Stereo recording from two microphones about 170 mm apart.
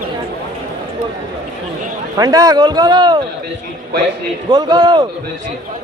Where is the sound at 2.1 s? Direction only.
20° right (ahead or behind).